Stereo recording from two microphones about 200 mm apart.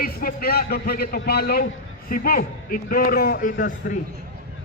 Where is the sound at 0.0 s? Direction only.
45° left (ahead or behind).